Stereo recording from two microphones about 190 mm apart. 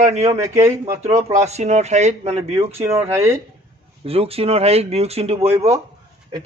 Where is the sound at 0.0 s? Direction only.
35° right (ahead or behind).